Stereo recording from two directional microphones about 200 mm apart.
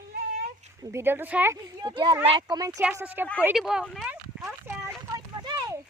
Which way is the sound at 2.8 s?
5° right (ahead or behind).